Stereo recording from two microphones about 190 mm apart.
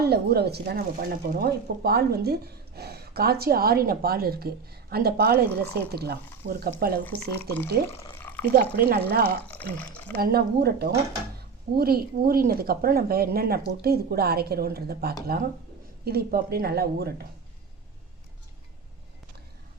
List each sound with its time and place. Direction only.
0.0 s a woman's voice: 55° right (ahead or behind)
7.0 s speech: 10° left (ahead or behind)
8.7 s a woman's voice: 50° right (ahead or behind)
9.4 s speech: 5° left (ahead or behind)
10.2 s a woman's voice: 55° right (ahead or behind)